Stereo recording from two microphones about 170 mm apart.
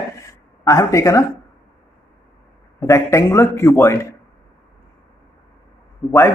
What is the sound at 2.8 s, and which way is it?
Speech, 15° left (ahead or behind).